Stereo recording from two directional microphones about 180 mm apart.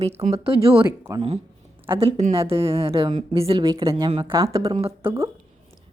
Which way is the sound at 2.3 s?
30° right (ahead or behind).